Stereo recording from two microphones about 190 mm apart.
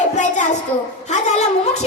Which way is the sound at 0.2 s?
40° left (ahead or behind).